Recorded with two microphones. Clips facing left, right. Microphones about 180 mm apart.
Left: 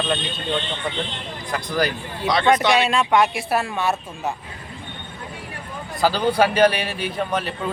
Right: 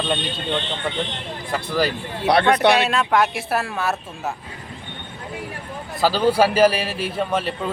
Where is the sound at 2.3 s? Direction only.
60° right (ahead or behind).